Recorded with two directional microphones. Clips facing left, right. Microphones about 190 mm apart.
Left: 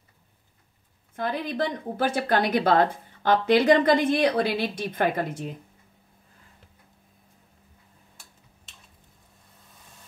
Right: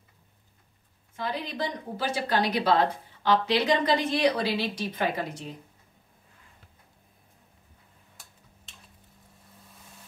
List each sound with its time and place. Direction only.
1.1 s a woman's voice: 55° left (ahead or behind)